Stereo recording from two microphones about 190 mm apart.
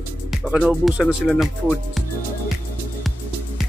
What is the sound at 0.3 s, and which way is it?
Speech, 5° right (ahead or behind).